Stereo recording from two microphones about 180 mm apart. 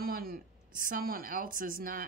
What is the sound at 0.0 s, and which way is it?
A woman's voice, 55° right (ahead or behind).